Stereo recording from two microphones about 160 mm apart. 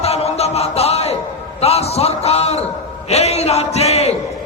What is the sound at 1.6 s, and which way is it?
A man's voice, 40° left (ahead or behind).